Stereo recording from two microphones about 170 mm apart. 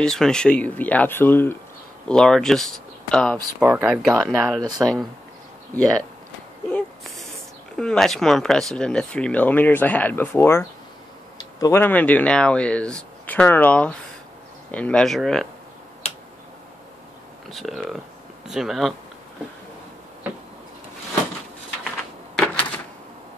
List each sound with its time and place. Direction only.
0.0 s speech: 5° left (ahead or behind)
3.5 s speech: 10° right (ahead or behind)
4.6 s speech: 25° right (ahead or behind)
5.8 s speech: 5° left (ahead or behind)
7.7 s speech: 5° left (ahead or behind)
17.5 s speech: centre (ahead or behind)
22.3 s door: 5° left (ahead or behind)